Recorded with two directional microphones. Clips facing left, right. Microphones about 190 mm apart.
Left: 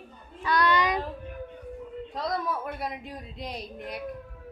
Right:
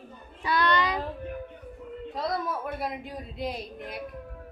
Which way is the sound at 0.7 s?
20° left (ahead or behind).